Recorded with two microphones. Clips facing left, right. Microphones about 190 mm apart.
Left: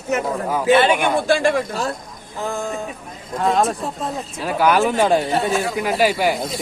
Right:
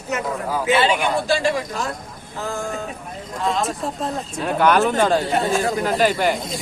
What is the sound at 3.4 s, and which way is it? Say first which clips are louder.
Speech: left 5 dB; 45° left (ahead or behind).